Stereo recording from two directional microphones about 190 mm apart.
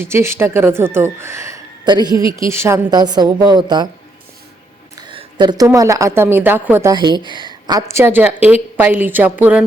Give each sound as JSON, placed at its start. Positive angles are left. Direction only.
{"t": 0.0, "sound": "a woman's voice", "side_deg": -15}
{"t": 4.9, "sound": "a woman's voice", "side_deg": -25}
{"t": 6.9, "sound": "a woman's voice", "side_deg": -25}